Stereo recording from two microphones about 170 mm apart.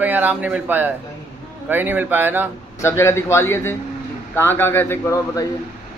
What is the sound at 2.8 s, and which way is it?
A man's voice, 15° left (ahead or behind).